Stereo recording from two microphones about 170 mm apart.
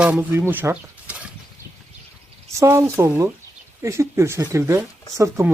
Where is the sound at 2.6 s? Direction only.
15° right (ahead or behind).